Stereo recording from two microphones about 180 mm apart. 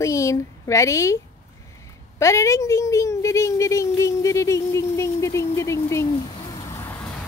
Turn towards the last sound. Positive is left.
turn(degrees=15)  # may be behind; listen again after turning